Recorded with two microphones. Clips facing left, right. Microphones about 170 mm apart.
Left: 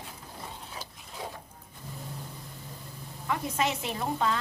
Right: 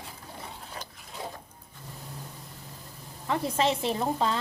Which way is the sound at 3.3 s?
30° right (ahead or behind).